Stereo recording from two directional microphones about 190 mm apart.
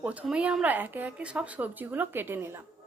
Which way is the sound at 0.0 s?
5° right (ahead or behind).